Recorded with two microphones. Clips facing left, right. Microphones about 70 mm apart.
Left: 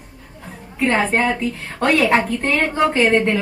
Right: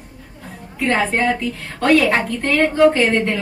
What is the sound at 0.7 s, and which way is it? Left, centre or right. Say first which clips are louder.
A woman's voice: left 1 dB; centre.